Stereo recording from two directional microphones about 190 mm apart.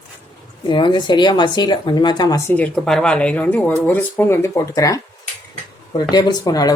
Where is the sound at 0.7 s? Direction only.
25° left (ahead or behind).